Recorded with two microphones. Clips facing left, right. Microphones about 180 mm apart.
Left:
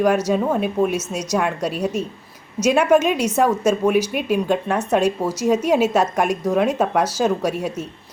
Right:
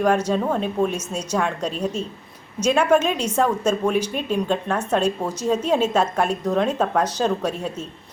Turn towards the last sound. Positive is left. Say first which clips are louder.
# left 3 dB
turn(degrees=10)  # may be behind; listen again after turning